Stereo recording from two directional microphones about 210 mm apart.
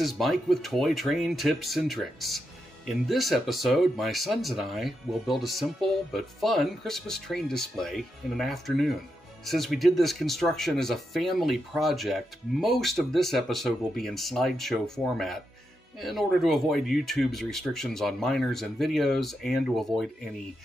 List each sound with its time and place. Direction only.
0.0 s speech: centre (ahead or behind)